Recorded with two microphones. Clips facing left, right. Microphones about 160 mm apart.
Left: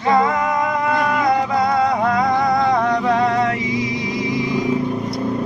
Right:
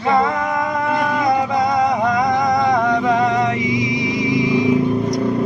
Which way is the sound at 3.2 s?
15° right (ahead or behind).